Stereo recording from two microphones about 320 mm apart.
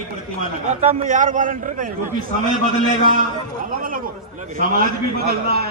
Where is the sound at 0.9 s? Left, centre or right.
Right.